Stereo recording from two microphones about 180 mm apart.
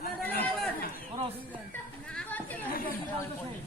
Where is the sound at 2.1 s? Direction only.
10° left (ahead or behind).